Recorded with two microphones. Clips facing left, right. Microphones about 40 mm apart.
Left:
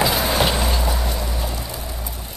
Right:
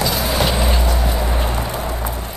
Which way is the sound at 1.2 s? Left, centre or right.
Right.